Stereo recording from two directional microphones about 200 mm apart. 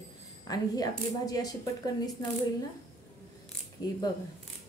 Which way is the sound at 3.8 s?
20° left (ahead or behind).